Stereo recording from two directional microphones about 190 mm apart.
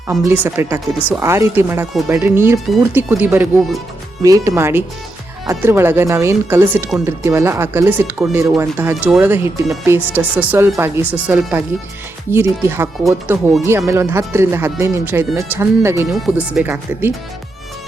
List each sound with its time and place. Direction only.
0.1 s speech: centre (ahead or behind)
0.4 s speech: 15° right (ahead or behind)
16.0 s speech: centre (ahead or behind)